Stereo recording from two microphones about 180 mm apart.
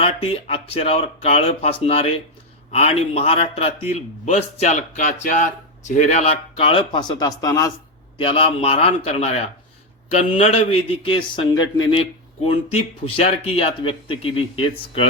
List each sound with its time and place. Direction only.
0.0 s a man's voice: 30° left (ahead or behind)
8.2 s a man's voice: 30° left (ahead or behind)